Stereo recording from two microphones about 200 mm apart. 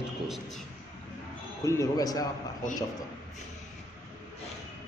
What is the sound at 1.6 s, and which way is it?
Speech, 15° left (ahead or behind).